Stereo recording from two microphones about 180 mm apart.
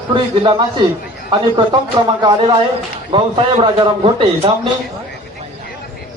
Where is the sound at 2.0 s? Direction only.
25° right (ahead or behind).